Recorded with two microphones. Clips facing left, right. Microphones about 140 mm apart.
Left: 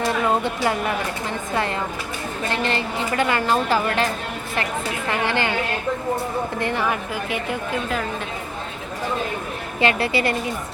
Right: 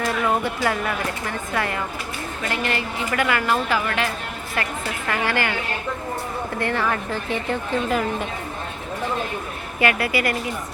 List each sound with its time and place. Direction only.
0.0 s a woman's voice: 25° left (ahead or behind)
5.0 s a woman's voice: 20° left (ahead or behind)
6.6 s a woman's voice: 20° left (ahead or behind)
9.8 s a woman's voice: 30° left (ahead or behind)